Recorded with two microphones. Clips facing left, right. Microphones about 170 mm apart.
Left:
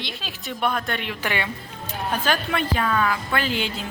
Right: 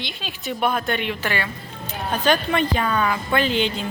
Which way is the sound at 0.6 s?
5° right (ahead or behind).